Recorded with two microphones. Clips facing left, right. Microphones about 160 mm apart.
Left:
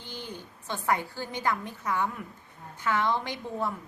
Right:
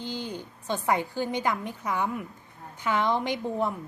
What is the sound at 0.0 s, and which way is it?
A woman's voice, 15° right (ahead or behind).